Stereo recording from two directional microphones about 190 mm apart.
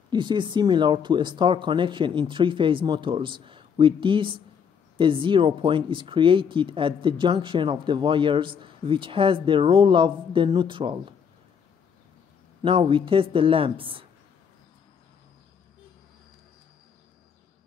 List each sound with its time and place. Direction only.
0.1 s speech: 25° right (ahead or behind)
12.6 s speech: 30° right (ahead or behind)